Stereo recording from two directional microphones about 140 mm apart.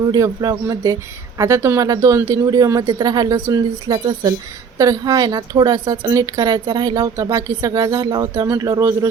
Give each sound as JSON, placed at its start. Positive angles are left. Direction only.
{"t": 0.1, "sound": "a woman's voice", "side_deg": -25}